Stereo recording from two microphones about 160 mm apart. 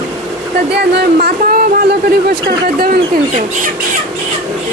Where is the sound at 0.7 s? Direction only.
80° right.